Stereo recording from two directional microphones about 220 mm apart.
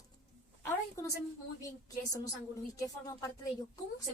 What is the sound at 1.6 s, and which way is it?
A woman's voice, 15° left (ahead or behind).